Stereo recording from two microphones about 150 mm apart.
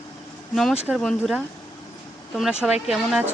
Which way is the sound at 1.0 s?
Centre (ahead or behind).